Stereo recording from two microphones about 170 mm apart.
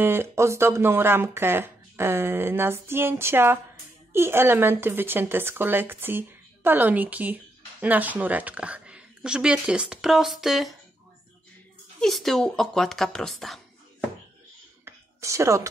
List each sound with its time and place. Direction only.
0.0 s speech: 15° right (ahead or behind)
12.0 s speech: centre (ahead or behind)
14.9 s a sound: 15° right (ahead or behind)